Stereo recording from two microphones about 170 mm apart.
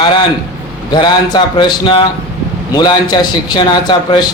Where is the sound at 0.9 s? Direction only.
25° left (ahead or behind).